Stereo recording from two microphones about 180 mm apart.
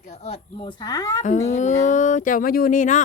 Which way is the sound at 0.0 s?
35° left (ahead or behind).